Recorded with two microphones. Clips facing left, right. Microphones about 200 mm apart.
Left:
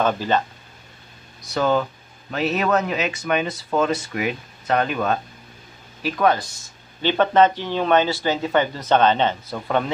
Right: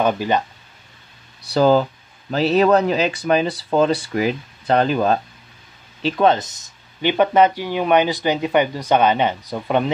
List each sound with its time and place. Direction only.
0.0 s speech: 15° right (ahead or behind)
1.4 s speech: 35° right (ahead or behind); by 9.8 s 15° right (ahead or behind)